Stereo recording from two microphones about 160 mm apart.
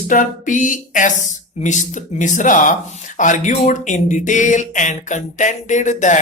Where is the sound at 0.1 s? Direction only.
55° left (ahead or behind).